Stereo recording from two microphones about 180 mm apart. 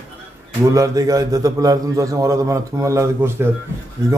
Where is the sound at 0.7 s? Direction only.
15° right (ahead or behind).